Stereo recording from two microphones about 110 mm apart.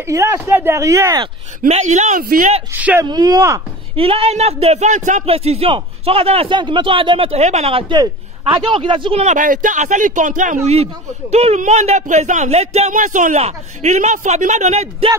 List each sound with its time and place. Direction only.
0.0 s speech: 25° right (ahead or behind)
1.7 s speech: 90° right
2.7 s speech: 15° right (ahead or behind)
3.1 s speech: 35° right (ahead or behind)
3.9 s speech: 60° right (ahead or behind)
6.5 s speech: 45° right (ahead or behind); by 7.8 s 75° right (ahead or behind)
7.9 s a man's voice: 40° right (ahead or behind)
9.2 s speech: 90° right